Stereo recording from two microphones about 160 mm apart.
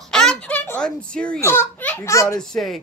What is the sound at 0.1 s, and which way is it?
Giggle, 5° left (ahead or behind).